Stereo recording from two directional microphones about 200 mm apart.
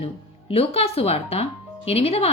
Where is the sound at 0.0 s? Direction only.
30° left (ahead or behind).